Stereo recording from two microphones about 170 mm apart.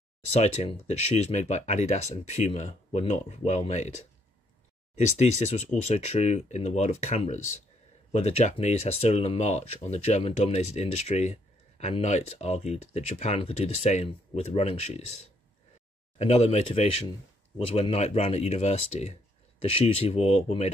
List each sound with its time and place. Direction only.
0.4 s speech: 40° left (ahead or behind)
4.9 s speech: 40° left (ahead or behind)
16.2 s speech: 40° left (ahead or behind)